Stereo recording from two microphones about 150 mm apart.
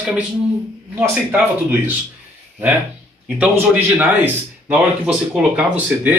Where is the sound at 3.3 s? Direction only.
10° right (ahead or behind).